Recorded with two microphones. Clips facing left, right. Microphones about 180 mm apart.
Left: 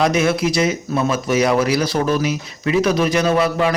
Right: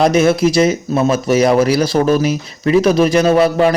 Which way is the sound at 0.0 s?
35° right (ahead or behind).